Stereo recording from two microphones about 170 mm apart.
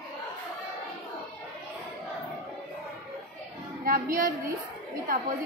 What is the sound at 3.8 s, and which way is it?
Speech, 55° right (ahead or behind).